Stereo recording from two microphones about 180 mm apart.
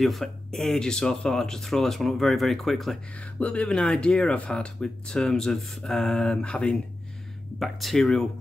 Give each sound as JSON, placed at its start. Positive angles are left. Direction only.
{"t": 0.0, "sound": "speech", "side_deg": 0}